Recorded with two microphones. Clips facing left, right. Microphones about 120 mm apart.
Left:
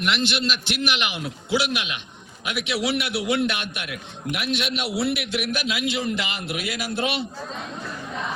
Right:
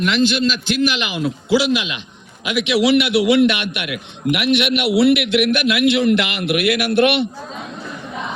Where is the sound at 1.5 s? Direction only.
90° right; by 7.3 s 70° right (ahead or behind).